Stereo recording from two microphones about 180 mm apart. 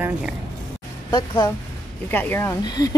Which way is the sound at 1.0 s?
25° left (ahead or behind).